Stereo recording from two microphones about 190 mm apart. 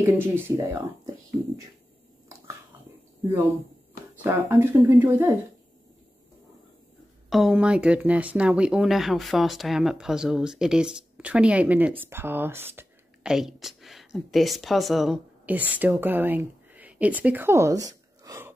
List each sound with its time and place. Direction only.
0.0 s speech: 15° right (ahead or behind)
4.2 s speech: 10° right (ahead or behind)
7.2 s speech: centre (ahead or behind); by 18.5 s 15° right (ahead or behind)